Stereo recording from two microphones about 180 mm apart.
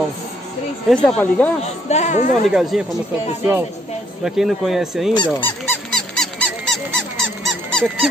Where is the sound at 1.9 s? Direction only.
40° left (ahead or behind).